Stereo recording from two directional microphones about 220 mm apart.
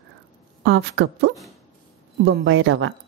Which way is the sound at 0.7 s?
55° right (ahead or behind).